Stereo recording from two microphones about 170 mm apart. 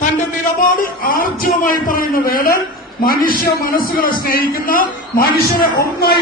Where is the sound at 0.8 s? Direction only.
55° left (ahead or behind).